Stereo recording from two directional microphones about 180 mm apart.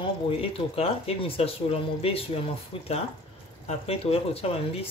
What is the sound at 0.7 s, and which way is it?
Speech, 35° left (ahead or behind).